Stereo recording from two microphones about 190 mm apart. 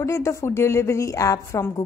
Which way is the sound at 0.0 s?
15° left (ahead or behind).